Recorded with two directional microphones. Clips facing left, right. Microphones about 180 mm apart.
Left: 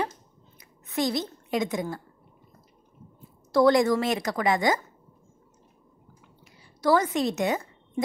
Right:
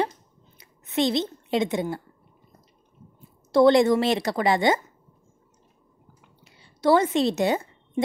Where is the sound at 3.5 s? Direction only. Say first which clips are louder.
Right 3 dB; 25° right (ahead or behind).